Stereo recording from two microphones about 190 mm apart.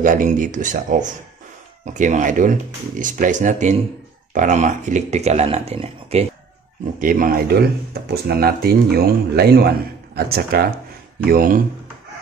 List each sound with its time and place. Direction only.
0.0 s speech: 45° right (ahead or behind)
7.0 s speech: 45° right (ahead or behind)